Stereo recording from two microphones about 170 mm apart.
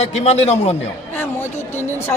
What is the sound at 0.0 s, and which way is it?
Speech, 40° left (ahead or behind).